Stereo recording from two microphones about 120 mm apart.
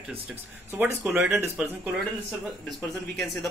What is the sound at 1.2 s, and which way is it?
Speech, 20° right (ahead or behind).